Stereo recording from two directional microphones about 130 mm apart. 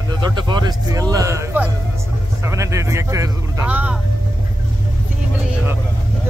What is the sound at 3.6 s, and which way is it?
Speech, 10° right (ahead or behind).